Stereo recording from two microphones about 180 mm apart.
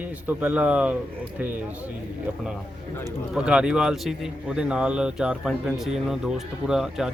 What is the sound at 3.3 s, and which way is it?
A man's voice, 5° right (ahead or behind).